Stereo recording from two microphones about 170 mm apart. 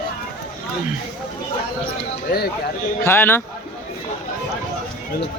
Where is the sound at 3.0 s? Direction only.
15° left (ahead or behind).